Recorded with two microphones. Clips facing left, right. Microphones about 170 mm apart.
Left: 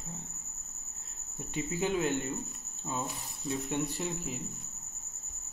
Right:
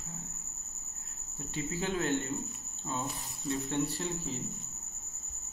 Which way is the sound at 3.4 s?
15° left (ahead or behind).